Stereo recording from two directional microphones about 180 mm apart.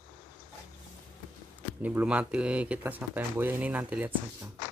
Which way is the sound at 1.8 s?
10° right (ahead or behind).